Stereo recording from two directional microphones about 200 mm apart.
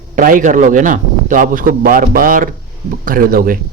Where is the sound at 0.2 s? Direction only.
40° right (ahead or behind).